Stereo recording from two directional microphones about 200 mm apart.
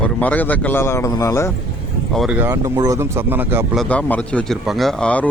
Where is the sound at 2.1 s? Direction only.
Centre (ahead or behind).